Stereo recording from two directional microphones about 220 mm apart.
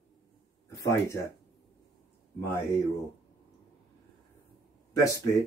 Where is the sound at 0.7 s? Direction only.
15° left (ahead or behind).